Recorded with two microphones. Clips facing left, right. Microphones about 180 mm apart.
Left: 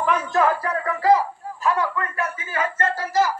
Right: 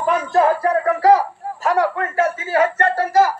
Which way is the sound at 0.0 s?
35° right (ahead or behind).